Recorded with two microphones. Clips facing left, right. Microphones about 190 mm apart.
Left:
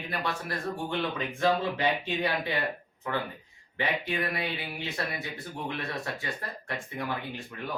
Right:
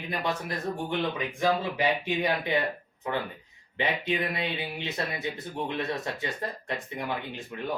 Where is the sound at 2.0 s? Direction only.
15° right (ahead or behind).